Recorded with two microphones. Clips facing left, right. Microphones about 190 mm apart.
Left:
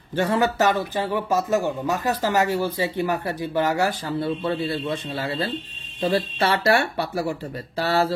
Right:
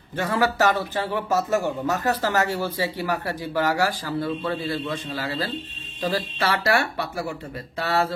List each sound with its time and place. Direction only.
0.1 s a man's voice: 30° left (ahead or behind)